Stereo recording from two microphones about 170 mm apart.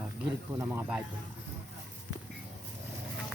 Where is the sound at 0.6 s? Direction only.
10° right (ahead or behind).